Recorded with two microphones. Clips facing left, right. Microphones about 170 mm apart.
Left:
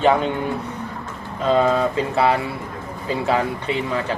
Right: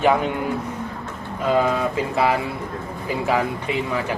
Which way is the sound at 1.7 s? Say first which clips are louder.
Left 3 dB; 30° left (ahead or behind).